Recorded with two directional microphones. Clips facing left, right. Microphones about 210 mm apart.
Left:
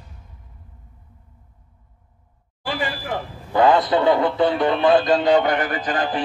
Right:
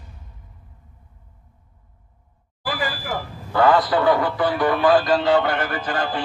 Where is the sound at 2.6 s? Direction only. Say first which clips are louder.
Left 1 dB; 25° left (ahead or behind).